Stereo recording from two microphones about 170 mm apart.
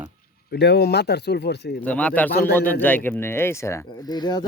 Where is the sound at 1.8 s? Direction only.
10° left (ahead or behind); by 4.5 s 25° left (ahead or behind).